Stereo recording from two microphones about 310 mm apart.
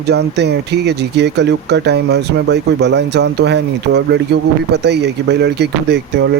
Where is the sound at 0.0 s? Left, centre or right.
Right.